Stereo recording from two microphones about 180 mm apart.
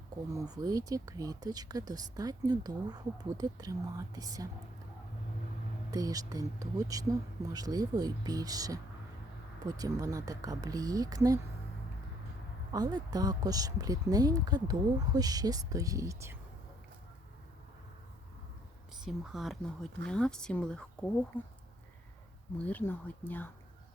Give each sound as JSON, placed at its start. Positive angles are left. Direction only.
{"t": 0.3, "sound": "speech", "side_deg": -20}
{"t": 5.9, "sound": "speech", "side_deg": -20}
{"t": 12.7, "sound": "speech", "side_deg": -20}
{"t": 19.0, "sound": "speech", "side_deg": 0}
{"t": 22.5, "sound": "speech", "side_deg": 10}